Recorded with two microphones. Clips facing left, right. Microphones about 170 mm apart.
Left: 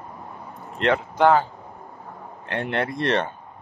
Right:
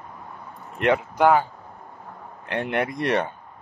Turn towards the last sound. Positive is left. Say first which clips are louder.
# even
turn(degrees=-15)  # may be behind; listen again after turning